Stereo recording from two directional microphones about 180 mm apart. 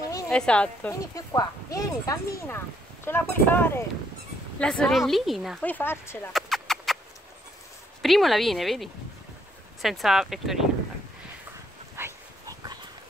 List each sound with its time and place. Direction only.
0.3 s a woman's voice: 5° left (ahead or behind)
1.1 s a woman's voice: 20° left (ahead or behind); by 5.7 s centre (ahead or behind)
5.7 s speech: 10° left (ahead or behind)
6.3 s a sound: centre (ahead or behind)
8.0 s a woman's voice: centre (ahead or behind)
12.0 s dog: 20° right (ahead or behind)